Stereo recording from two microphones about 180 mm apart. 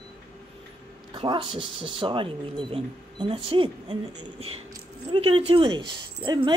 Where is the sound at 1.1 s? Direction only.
25° right (ahead or behind).